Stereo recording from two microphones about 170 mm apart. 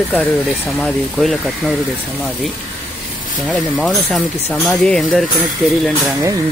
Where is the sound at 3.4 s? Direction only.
Centre (ahead or behind).